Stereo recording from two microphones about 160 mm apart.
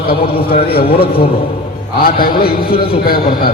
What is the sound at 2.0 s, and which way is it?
A man's voice, 70° left (ahead or behind).